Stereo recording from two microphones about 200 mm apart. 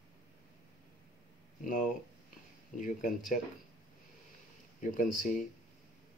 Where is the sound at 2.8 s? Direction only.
40° left (ahead or behind).